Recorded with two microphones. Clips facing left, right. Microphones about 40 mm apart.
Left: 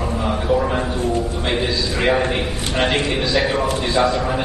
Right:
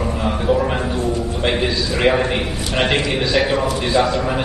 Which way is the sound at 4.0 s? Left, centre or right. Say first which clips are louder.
Even; right.